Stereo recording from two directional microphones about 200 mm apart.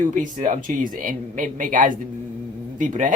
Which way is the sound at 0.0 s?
40° right (ahead or behind).